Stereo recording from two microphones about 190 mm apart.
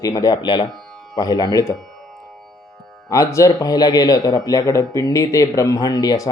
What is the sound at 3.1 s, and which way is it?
Speech, 15° left (ahead or behind).